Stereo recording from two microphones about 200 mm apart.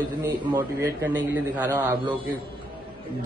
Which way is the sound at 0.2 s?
20° right (ahead or behind).